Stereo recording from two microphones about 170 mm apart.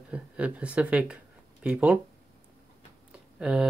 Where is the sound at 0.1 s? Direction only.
5° right (ahead or behind).